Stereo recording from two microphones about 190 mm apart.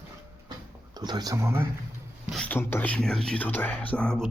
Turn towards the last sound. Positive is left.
turn(degrees=5)  # may be behind; listen again after turning